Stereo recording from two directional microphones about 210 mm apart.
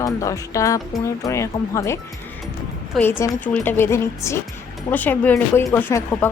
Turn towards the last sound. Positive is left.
turn(degrees=10)  # may be behind; listen again after turning